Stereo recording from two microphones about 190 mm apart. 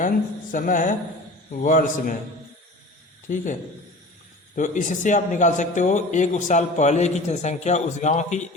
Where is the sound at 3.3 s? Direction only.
45° left (ahead or behind).